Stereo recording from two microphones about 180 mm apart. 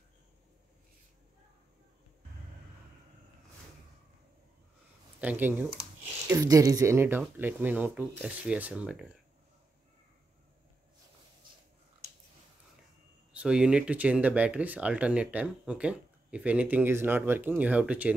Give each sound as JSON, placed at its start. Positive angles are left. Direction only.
{"t": 5.2, "sound": "speech", "side_deg": -10}
{"t": 13.3, "sound": "speech", "side_deg": -5}